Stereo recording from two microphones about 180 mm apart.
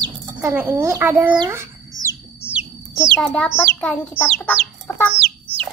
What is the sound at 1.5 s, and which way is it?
Bird, 15° right (ahead or behind).